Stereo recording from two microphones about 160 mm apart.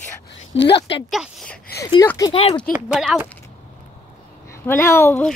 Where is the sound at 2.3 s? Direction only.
35° left (ahead or behind).